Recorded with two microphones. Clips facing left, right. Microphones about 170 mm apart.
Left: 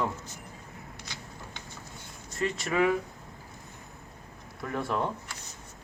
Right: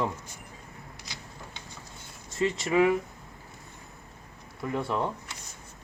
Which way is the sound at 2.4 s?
15° right (ahead or behind).